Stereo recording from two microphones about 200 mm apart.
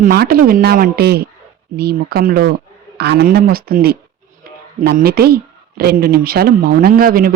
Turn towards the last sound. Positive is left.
turn(degrees=-45)  # may be behind; listen again after turning